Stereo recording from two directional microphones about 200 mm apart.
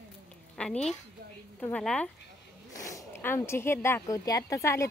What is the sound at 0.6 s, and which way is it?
Speech, 5° left (ahead or behind).